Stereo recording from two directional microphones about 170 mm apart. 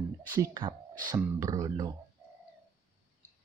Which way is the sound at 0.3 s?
25° right (ahead or behind).